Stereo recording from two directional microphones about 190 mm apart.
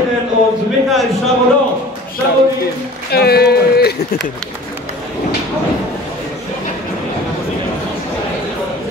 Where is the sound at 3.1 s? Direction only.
55° left (ahead or behind).